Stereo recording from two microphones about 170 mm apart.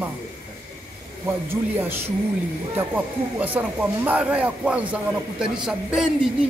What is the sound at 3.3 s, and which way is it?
Speech, 10° right (ahead or behind).